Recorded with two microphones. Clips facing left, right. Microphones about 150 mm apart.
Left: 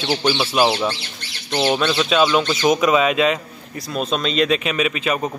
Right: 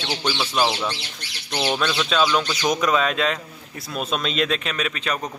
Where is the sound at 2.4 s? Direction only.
25° left (ahead or behind).